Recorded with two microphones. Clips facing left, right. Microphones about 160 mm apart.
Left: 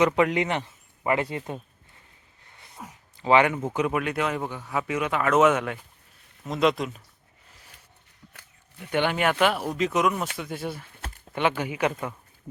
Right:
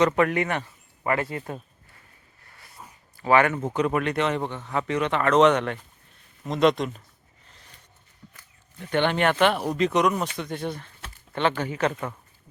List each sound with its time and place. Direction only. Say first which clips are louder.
0.0 s speech: even; 15° left (ahead or behind)
2.5 s a sound: even; 20° left (ahead or behind)
3.2 s speech: even; 20° left (ahead or behind); by 7.0 s centre (ahead or behind)
8.8 s speech: right 2 dB; 10° left (ahead or behind)